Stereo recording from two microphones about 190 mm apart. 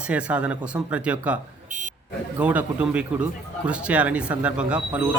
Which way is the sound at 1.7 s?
45° right (ahead or behind).